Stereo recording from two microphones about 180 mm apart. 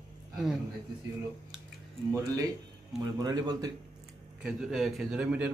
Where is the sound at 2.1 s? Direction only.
15° right (ahead or behind).